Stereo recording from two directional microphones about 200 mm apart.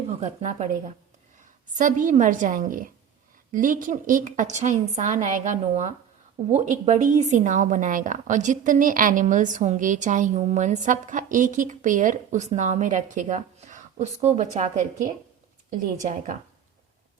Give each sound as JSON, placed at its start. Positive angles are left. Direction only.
{"t": 0.2, "sound": "a woman's voice", "side_deg": -40}